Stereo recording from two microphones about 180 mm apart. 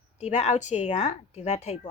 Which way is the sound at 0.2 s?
40° left (ahead or behind).